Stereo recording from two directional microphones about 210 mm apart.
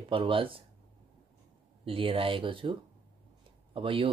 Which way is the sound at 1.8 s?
25° right (ahead or behind).